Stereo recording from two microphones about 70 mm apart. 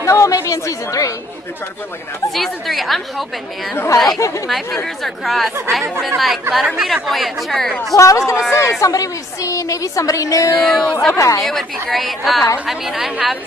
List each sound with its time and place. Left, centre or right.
0.0 s chatter: left
0.5 s a woman's voice: left
2.3 s speech: centre
3.7 s speech: left
4.2 s speech: left
5.0 s speech: centre
7.9 s a woman's voice: left
8.9 s a woman's voice: left
10.6 s speech: centre
11.1 s a woman's voice: left
11.4 s speech: centre